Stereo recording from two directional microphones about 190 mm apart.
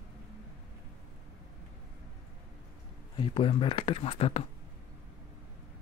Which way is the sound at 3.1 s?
25° left (ahead or behind).